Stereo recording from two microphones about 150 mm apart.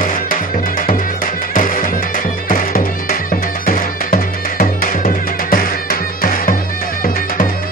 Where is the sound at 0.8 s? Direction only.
65° left (ahead or behind).